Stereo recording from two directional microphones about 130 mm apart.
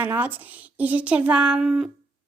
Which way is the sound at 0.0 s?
15° right (ahead or behind).